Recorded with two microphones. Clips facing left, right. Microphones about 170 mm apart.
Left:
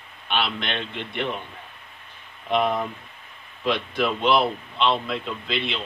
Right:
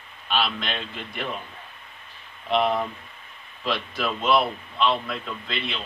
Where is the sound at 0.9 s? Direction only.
70° left (ahead or behind).